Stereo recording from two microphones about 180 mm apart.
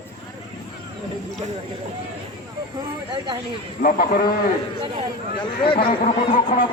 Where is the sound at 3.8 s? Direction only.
50° left (ahead or behind).